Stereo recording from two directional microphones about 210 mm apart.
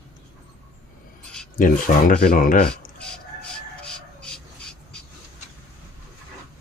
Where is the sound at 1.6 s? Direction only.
40° left (ahead or behind).